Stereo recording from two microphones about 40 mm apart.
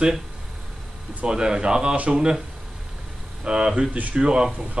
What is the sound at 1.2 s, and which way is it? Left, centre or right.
Speech, centre.